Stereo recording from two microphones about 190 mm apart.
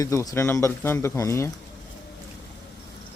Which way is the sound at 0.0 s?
15° left (ahead or behind).